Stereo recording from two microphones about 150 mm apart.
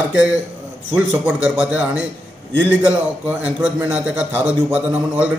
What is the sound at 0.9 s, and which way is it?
Speech, 10° right (ahead or behind).